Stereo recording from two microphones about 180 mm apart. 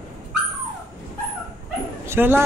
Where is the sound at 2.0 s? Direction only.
10° right (ahead or behind).